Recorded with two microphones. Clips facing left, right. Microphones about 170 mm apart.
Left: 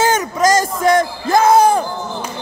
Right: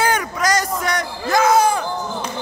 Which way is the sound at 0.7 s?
30° left (ahead or behind).